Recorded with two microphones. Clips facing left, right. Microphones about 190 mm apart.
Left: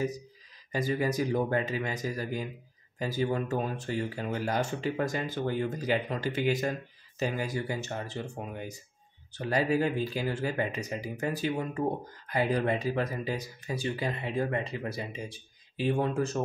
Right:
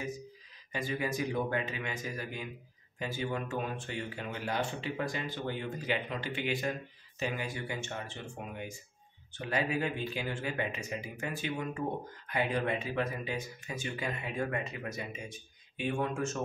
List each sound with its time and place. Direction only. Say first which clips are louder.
0.7 s speech: left 6 dB; 40° left (ahead or behind)